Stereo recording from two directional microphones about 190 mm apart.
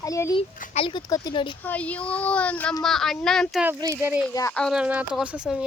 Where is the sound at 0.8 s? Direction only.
20° left (ahead or behind).